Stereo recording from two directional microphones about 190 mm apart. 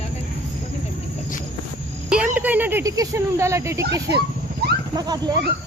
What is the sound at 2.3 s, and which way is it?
Speech, 10° right (ahead or behind).